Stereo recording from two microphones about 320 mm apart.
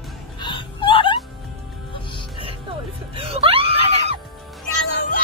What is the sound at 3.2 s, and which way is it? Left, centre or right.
Music, centre.